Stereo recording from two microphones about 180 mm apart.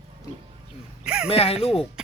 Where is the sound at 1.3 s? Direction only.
35° left (ahead or behind).